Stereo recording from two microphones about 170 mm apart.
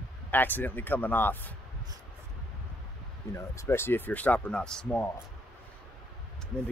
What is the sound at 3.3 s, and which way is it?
Speech, 15° left (ahead or behind).